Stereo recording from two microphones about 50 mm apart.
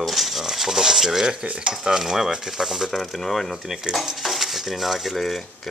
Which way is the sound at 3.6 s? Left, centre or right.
Centre.